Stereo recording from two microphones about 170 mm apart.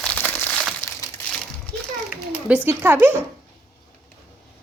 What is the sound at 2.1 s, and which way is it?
Speech, 5° right (ahead or behind).